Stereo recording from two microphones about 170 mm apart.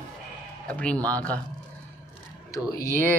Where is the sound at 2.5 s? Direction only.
20° left (ahead or behind).